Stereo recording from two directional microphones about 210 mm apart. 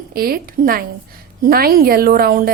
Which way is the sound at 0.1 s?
45° right (ahead or behind).